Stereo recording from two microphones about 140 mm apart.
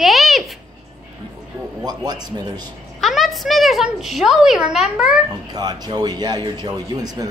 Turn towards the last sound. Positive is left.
turn(degrees=-30)  # may be behind; listen again after turning